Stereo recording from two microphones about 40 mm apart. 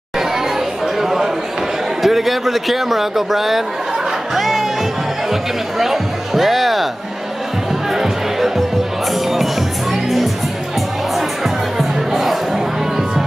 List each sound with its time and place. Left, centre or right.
0.9 s a sound: centre
4.4 s music: centre
7.9 s music: centre
12.1 s music: centre